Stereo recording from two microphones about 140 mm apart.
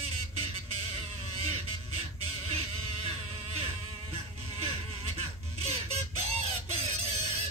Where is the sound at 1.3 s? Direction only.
45° right (ahead or behind).